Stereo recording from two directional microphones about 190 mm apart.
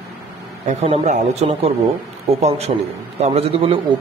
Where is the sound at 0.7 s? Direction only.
35° right (ahead or behind).